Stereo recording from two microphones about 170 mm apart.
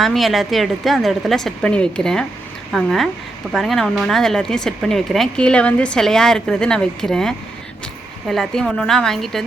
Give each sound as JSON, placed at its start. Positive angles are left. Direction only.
{"t": 0.0, "sound": "speech", "side_deg": 0}